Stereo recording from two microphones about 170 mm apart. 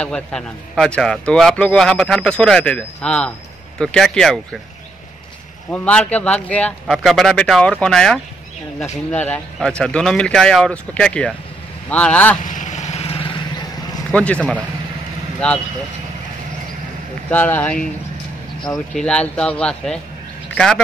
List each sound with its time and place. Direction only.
0.0 s a man's voice: 5° left (ahead or behind)
5.7 s a man's voice: 10° left (ahead or behind)
12.4 s vehicle: 45° left (ahead or behind); by 13.7 s 30° left (ahead or behind)
14.1 s speech: 5° left (ahead or behind)
17.3 s speech: 10° left (ahead or behind)
18.9 s a man's voice: 5° left (ahead or behind)